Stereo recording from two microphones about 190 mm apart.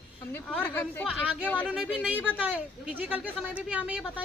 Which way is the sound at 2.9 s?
10° right (ahead or behind).